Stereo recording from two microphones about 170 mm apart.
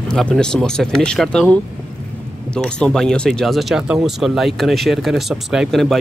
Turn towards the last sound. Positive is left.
turn(degrees=0)  # may be behind; listen again after turning